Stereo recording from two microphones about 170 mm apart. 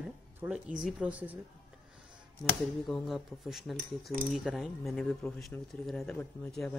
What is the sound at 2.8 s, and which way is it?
Speech, centre (ahead or behind).